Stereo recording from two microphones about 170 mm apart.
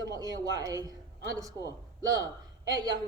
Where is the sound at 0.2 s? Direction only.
20° right (ahead or behind).